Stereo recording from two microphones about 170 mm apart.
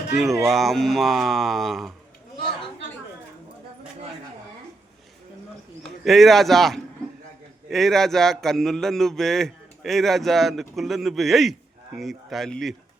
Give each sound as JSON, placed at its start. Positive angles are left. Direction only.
{"t": 0.4, "sound": "a man's voice", "side_deg": 0}
{"t": 5.8, "sound": "a man's voice", "side_deg": 0}